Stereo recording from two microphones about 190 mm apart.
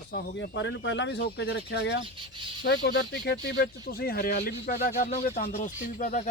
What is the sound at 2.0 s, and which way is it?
Speech, 25° right (ahead or behind).